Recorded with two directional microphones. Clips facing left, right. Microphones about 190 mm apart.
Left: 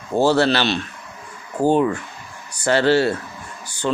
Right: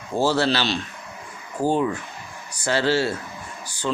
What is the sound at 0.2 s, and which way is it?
Speech, 60° left (ahead or behind).